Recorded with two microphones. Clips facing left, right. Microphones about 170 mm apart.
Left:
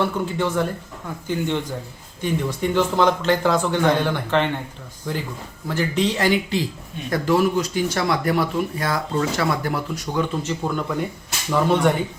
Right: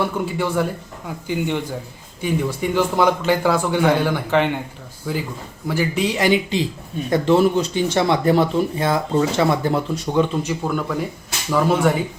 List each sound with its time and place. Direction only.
0.0 s a man's voice: 10° right (ahead or behind)
10.6 s speech: centre (ahead or behind)